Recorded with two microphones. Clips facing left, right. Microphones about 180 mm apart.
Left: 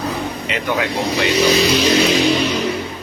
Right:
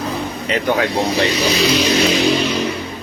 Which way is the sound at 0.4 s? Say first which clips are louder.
Right 5 dB; 40° right (ahead or behind).